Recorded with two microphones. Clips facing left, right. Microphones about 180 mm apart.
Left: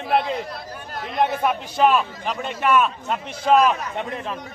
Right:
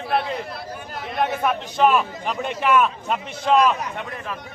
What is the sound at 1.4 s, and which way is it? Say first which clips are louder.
Speech: right 2 dB; 5° left (ahead or behind).